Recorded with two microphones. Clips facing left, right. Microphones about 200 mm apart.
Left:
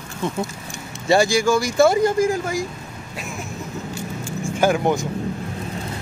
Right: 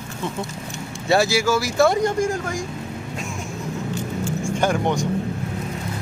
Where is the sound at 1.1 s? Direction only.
5° right (ahead or behind).